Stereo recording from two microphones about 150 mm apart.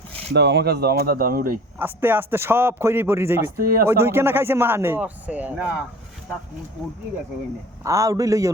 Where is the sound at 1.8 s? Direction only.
15° right (ahead or behind).